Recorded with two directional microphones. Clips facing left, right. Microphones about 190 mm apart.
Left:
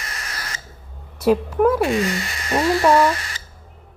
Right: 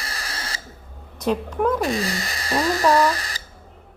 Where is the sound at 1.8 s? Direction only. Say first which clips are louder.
Left 4 dB; 35° right (ahead or behind).